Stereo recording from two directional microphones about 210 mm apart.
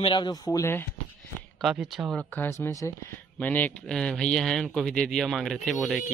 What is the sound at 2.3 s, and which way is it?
Speech, 10° left (ahead or behind).